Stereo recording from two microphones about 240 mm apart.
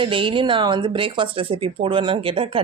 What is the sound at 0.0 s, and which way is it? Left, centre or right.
A man's voice, right.